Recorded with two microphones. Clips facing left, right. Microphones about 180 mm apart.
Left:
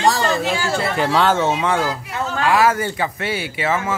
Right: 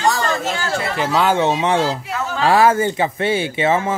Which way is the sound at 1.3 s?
20° right (ahead or behind).